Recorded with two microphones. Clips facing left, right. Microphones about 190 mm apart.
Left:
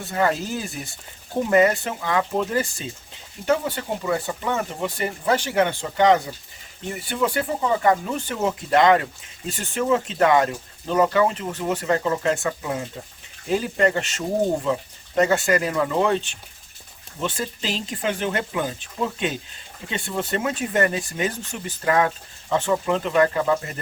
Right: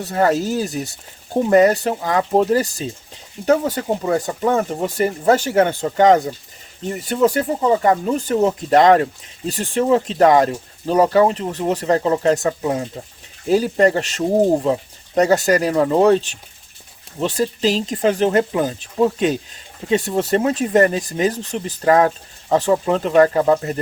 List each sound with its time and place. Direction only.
0.0 s speech: 40° right (ahead or behind)